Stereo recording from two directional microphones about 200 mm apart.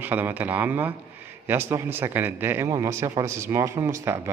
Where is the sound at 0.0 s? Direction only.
10° right (ahead or behind).